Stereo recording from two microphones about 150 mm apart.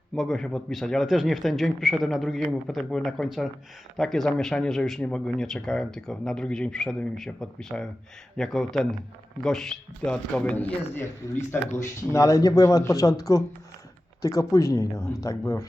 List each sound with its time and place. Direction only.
0.2 s a man's voice: centre (ahead or behind); by 15.6 s 20° left (ahead or behind)